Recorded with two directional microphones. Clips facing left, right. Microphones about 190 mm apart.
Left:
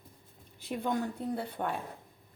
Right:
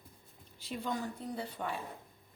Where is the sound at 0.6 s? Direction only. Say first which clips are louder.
Left 5 dB; 55° left (ahead or behind).